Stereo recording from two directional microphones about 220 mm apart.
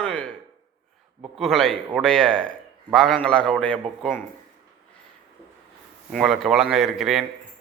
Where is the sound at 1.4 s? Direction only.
Centre (ahead or behind).